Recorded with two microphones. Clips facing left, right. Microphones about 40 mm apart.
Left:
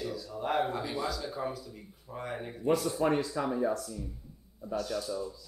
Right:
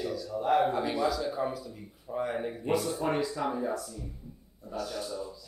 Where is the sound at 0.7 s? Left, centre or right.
Centre.